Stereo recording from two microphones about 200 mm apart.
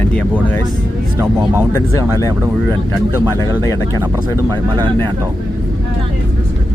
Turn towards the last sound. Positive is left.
turn(degrees=-20)  # may be behind; listen again after turning